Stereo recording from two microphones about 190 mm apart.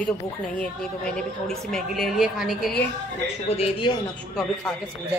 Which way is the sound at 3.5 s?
30° left (ahead or behind).